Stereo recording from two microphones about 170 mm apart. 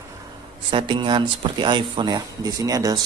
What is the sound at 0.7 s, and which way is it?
Speech, 30° right (ahead or behind).